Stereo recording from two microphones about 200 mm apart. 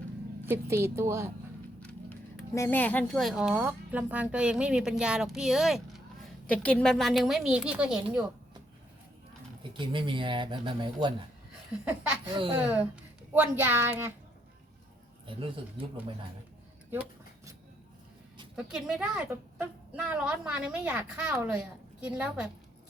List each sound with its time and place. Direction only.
0.4 s a woman's voice: 10° right (ahead or behind)
1.8 s a woman's voice: 5° left (ahead or behind)
9.7 s speech: 25° right (ahead or behind)
12.3 s speech: 25° right (ahead or behind)
12.6 s a woman's voice: 10° right (ahead or behind)
15.4 s speech: 25° right (ahead or behind)
16.9 s a sound: 10° right (ahead or behind)
18.5 s a woman's voice: centre (ahead or behind)